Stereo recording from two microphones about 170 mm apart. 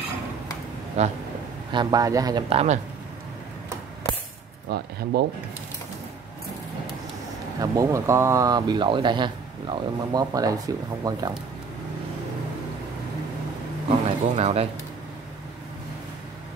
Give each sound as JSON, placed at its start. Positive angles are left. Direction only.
{"t": 1.0, "sound": "speech", "side_deg": -40}
{"t": 1.7, "sound": "speech", "side_deg": -25}
{"t": 2.5, "sound": "speech", "side_deg": -40}
{"t": 4.6, "sound": "speech", "side_deg": -70}
{"t": 7.6, "sound": "speech", "side_deg": -20}
{"t": 13.8, "sound": "a sound", "side_deg": -40}